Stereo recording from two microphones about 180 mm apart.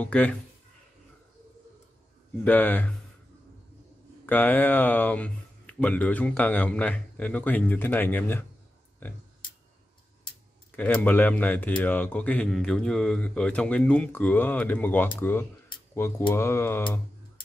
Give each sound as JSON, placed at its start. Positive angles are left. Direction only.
{"t": 0.0, "sound": "speech", "side_deg": 10}
{"t": 2.4, "sound": "speech", "side_deg": 10}
{"t": 4.3, "sound": "speech", "side_deg": 10}
{"t": 10.8, "sound": "speech", "side_deg": 10}